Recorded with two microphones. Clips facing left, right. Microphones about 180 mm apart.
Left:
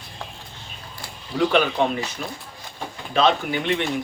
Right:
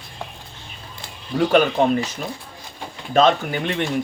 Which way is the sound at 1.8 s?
45° right (ahead or behind).